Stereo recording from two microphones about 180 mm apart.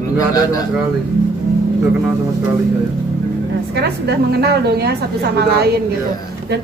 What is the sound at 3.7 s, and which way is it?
A woman's voice, 65° right (ahead or behind).